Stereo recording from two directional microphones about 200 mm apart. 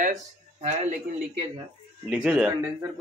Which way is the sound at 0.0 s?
35° right (ahead or behind).